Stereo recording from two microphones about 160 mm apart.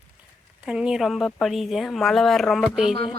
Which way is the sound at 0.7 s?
5° right (ahead or behind).